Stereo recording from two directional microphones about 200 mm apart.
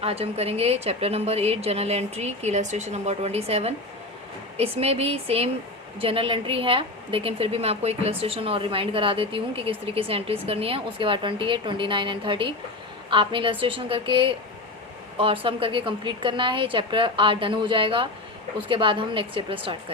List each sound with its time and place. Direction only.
0.0 s a woman's voice: 30° right (ahead or behind)